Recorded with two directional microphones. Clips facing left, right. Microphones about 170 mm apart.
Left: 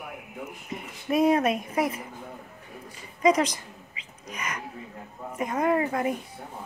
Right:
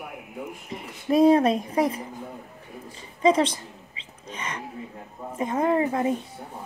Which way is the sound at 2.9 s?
30° right (ahead or behind).